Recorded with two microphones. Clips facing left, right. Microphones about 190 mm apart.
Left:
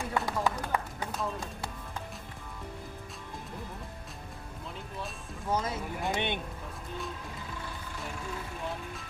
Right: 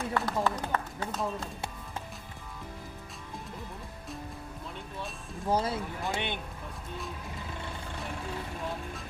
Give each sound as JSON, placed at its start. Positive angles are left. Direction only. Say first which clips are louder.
{"t": 0.1, "sound": "run", "louder": "even", "side_deg": 15}
{"t": 5.5, "sound": "speech", "louder": "right 3 dB", "side_deg": -30}
{"t": 6.0, "sound": "speech", "louder": "left 3 dB", "side_deg": 20}